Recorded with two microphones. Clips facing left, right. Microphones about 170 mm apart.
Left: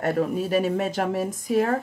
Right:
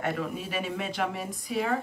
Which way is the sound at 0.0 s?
40° left (ahead or behind).